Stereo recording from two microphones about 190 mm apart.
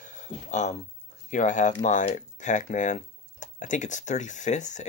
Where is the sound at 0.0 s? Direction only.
40° left (ahead or behind).